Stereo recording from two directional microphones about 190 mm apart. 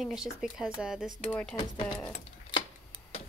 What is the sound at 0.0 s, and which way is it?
Speech, centre (ahead or behind).